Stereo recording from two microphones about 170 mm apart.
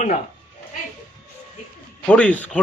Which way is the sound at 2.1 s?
10° left (ahead or behind).